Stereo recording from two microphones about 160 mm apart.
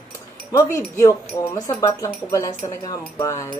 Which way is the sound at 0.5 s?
20° left (ahead or behind).